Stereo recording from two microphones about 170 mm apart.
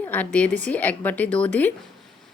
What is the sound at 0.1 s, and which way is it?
A woman's voice, 10° left (ahead or behind).